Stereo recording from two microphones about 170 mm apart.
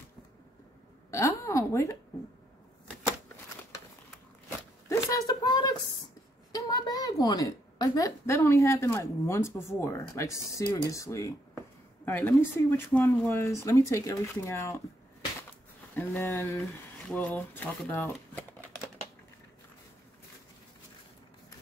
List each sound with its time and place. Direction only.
1.1 s a sound: 20° left (ahead or behind)
4.5 s zipper: 20° left (ahead or behind)
6.5 s a woman's voice: 25° left (ahead or behind)
15.9 s speech: 10° left (ahead or behind)